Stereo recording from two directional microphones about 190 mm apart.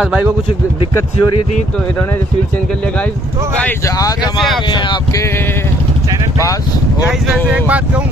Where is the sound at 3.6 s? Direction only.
15° left (ahead or behind).